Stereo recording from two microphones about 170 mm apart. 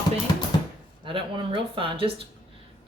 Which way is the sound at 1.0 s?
30° right (ahead or behind).